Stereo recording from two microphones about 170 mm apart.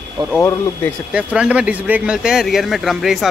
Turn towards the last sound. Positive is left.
turn(degrees=0)  # may be behind; listen again after turning